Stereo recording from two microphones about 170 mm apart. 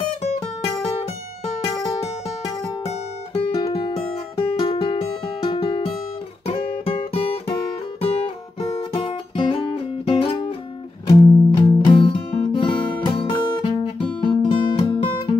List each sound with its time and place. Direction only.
2.8 s music: 35° left (ahead or behind)
6.4 s guitar: 35° left (ahead or behind)
8.0 s music: 35° left (ahead or behind)